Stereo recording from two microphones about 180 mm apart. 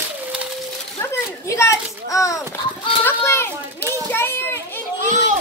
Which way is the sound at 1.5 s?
15° left (ahead or behind).